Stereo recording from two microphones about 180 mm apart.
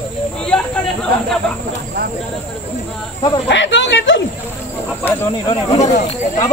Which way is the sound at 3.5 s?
90° left.